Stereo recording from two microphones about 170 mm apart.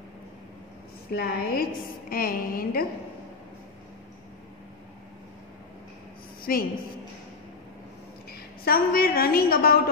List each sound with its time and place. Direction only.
1.1 s a woman's voice: 60° left (ahead or behind)
6.5 s a woman's voice: 60° left (ahead or behind)
8.3 s a woman's voice: 60° left (ahead or behind)